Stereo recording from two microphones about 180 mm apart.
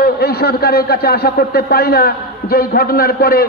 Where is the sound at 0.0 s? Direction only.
60° left (ahead or behind).